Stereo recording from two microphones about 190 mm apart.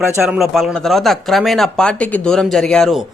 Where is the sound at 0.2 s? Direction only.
Centre (ahead or behind).